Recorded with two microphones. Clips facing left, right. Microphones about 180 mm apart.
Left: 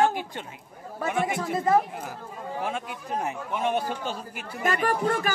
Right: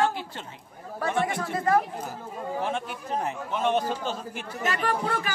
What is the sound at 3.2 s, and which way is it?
A man's voice, 10° left (ahead or behind).